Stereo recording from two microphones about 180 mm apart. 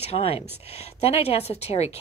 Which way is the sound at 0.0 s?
35° left (ahead or behind).